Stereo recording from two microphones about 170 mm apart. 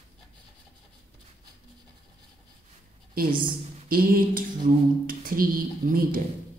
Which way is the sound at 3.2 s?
60° right (ahead or behind).